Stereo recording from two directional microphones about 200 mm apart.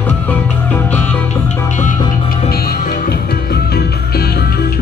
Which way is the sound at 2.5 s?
50° left (ahead or behind).